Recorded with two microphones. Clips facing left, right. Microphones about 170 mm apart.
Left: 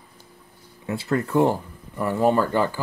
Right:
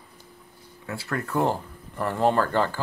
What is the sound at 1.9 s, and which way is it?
Speech, 5° left (ahead or behind).